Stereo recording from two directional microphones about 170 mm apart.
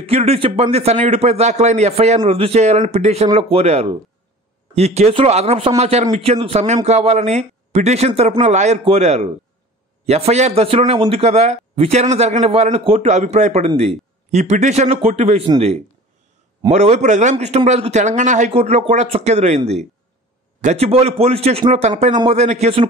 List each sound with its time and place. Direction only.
0.0 s a man's voice: 35° right (ahead or behind)
16.6 s a man's voice: 40° right (ahead or behind)